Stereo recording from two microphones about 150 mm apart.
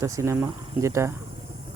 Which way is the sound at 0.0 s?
20° right (ahead or behind).